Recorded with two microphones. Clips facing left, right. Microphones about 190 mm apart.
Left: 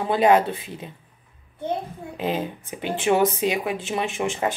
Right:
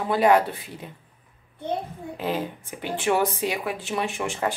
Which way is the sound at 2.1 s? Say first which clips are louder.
Left 2 dB; 20° left (ahead or behind).